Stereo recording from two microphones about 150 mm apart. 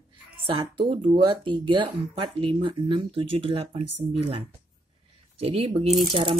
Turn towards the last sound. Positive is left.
turn(degrees=-35)  # may be behind; listen again after turning